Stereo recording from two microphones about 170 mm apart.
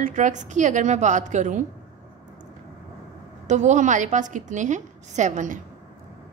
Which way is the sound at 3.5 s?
45° right (ahead or behind).